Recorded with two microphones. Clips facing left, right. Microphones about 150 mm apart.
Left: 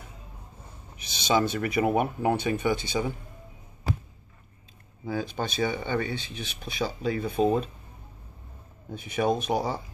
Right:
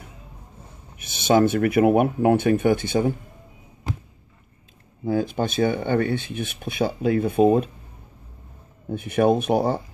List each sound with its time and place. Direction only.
0.9 s speech: 55° right (ahead or behind)
5.0 s speech: 50° right (ahead or behind)
8.9 s speech: 55° right (ahead or behind)